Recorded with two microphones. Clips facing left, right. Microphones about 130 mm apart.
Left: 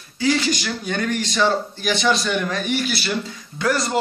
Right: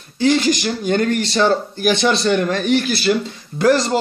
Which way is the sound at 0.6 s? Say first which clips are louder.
Right 7 dB; 45° right (ahead or behind).